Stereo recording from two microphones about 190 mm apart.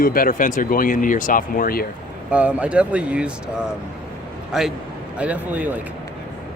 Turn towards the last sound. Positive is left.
turn(degrees=-10)  # may be behind; listen again after turning